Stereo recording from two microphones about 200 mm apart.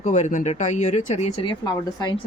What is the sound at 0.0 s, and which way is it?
Speech, 35° left (ahead or behind).